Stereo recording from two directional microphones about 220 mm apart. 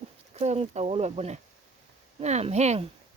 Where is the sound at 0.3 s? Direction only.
30° right (ahead or behind).